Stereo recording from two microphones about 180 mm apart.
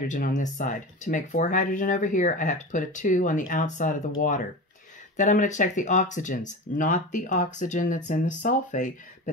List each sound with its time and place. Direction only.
0.0 s speech: 45° left (ahead or behind)
5.1 s speech: 45° left (ahead or behind)